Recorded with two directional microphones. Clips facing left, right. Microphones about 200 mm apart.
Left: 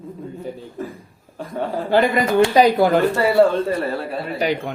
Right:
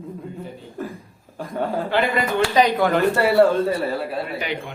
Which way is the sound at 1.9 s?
40° left (ahead or behind).